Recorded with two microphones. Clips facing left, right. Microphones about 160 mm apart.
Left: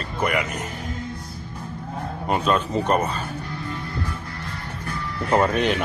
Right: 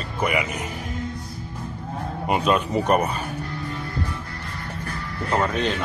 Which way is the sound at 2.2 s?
10° right (ahead or behind).